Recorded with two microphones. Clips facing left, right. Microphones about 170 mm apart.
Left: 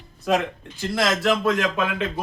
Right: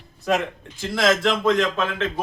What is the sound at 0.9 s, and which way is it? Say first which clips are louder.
A man's voice: right 1 dB; centre (ahead or behind).